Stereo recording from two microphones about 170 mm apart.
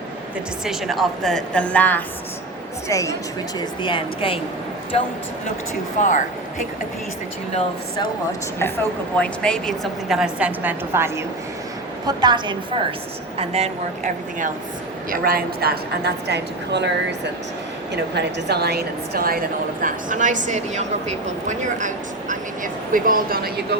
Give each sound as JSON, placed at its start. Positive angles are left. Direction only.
{"t": 0.6, "sound": "a woman's voice", "side_deg": 0}
{"t": 3.8, "sound": "speech", "side_deg": 30}
{"t": 6.0, "sound": "speech", "side_deg": 50}
{"t": 9.1, "sound": "a woman's voice", "side_deg": 5}
{"t": 12.0, "sound": "a woman's voice", "side_deg": -25}
{"t": 13.4, "sound": "a woman's voice", "side_deg": -35}
{"t": 15.1, "sound": "a woman's voice", "side_deg": -60}